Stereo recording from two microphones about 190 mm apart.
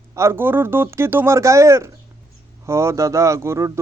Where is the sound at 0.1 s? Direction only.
15° right (ahead or behind).